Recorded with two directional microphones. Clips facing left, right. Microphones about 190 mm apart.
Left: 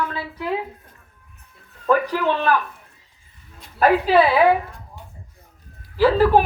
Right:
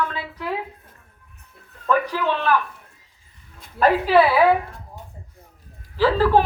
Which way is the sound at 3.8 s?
15° left (ahead or behind).